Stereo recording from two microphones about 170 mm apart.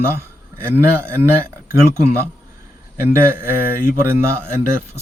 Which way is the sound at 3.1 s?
15° right (ahead or behind).